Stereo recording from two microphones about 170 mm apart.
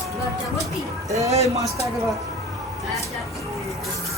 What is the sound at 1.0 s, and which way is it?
Speech, 20° right (ahead or behind).